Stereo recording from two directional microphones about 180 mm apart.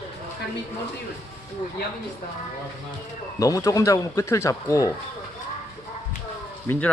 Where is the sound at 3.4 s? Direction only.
20° left (ahead or behind).